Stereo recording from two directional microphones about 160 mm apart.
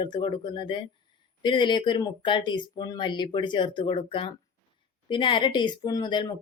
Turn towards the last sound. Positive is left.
turn(degrees=30)  # may be behind; listen again after turning